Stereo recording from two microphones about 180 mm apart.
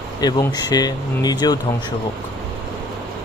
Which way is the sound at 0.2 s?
20° left (ahead or behind).